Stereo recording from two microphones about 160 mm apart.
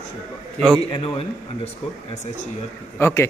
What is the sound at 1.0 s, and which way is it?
Speech, 40° left (ahead or behind).